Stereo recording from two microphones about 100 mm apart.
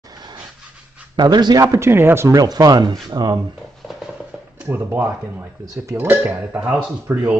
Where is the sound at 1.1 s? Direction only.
45° right (ahead or behind).